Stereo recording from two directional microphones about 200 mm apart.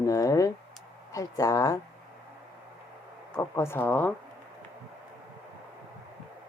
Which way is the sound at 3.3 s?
15° left (ahead or behind).